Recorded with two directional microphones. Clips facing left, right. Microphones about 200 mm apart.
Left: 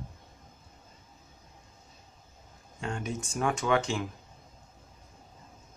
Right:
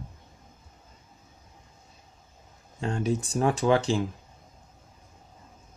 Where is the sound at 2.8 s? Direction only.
35° right (ahead or behind).